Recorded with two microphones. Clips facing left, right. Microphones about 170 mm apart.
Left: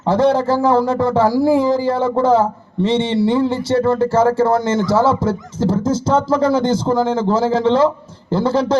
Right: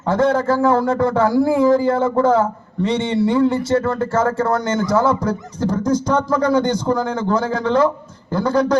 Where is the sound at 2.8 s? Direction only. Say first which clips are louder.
Left 2 dB; 25° left (ahead or behind).